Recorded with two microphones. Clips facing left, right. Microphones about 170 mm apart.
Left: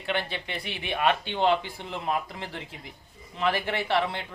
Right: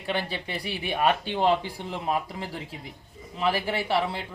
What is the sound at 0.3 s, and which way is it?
Speech, 35° right (ahead or behind).